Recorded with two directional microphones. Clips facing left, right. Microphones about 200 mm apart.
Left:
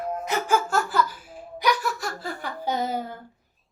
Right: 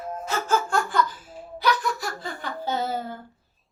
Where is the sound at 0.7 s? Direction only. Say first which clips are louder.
Even; 5° left (ahead or behind).